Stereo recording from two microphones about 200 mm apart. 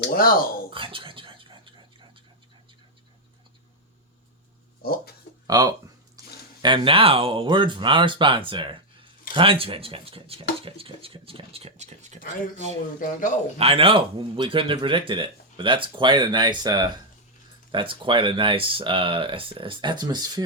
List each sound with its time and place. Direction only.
0.1 s speech: 45° left (ahead or behind)
0.7 s a sound: 25° right (ahead or behind)
4.8 s speech: 50° left (ahead or behind)
5.5 s speech: 20° right (ahead or behind)
6.2 s a sound: 20° right (ahead or behind)
6.6 s speech: 25° right (ahead or behind)
13.0 s a man's voice: 40° left (ahead or behind)
13.6 s speech: 30° right (ahead or behind)